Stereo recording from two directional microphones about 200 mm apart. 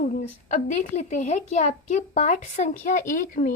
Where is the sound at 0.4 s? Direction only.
35° left (ahead or behind).